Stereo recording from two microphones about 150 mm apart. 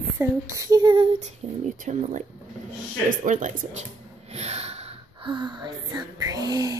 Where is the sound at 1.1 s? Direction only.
50° right (ahead or behind).